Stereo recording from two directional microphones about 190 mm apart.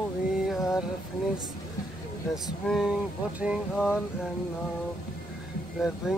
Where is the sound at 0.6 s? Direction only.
15° left (ahead or behind).